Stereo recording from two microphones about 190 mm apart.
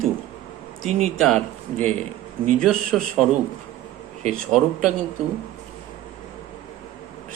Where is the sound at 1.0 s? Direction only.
Centre (ahead or behind).